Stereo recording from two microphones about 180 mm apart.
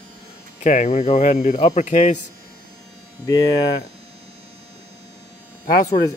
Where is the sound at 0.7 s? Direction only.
40° left (ahead or behind).